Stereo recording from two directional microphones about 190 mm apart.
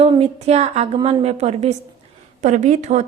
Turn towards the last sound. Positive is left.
turn(degrees=-35)  # may be behind; listen again after turning